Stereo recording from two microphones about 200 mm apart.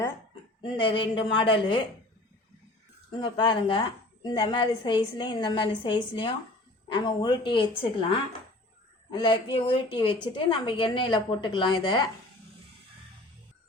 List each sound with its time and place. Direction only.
0.6 s a woman's voice: 25° left (ahead or behind)
3.1 s a woman's voice: 20° left (ahead or behind)
9.0 s a woman's voice: 20° left (ahead or behind)